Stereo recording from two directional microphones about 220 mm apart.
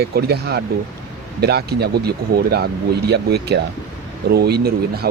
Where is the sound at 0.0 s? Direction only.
45° right (ahead or behind).